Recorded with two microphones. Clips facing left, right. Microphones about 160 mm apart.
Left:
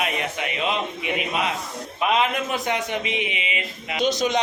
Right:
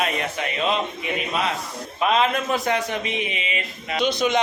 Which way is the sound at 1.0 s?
15° left (ahead or behind).